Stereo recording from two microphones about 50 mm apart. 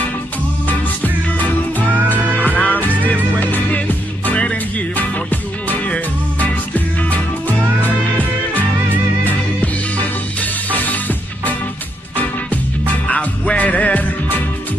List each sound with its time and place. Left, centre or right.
0.7 s music: left
7.8 s music: left
13.1 s music: left